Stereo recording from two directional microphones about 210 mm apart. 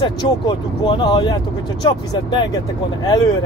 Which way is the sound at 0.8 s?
20° left (ahead or behind).